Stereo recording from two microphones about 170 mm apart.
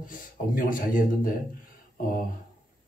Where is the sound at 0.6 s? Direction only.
55° left (ahead or behind).